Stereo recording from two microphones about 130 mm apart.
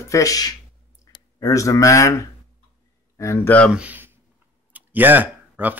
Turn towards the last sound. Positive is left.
turn(degrees=-15)  # may be behind; listen again after turning